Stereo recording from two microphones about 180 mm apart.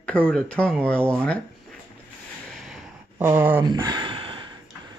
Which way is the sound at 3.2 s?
10° right (ahead or behind).